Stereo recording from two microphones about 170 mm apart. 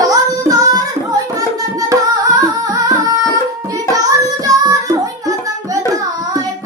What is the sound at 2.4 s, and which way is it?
Music, 20° right (ahead or behind).